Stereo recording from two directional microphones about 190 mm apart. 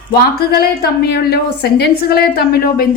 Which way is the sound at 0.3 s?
55° left (ahead or behind).